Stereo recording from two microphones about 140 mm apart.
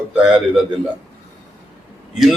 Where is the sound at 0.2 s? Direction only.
5° right (ahead or behind).